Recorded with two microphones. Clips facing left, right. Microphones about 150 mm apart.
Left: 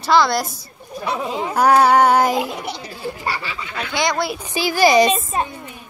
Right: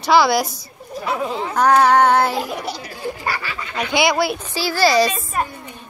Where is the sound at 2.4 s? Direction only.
20° left (ahead or behind).